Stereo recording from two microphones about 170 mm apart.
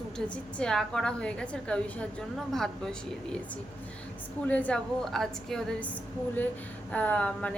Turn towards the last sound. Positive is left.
turn(degrees=5)  # may be behind; listen again after turning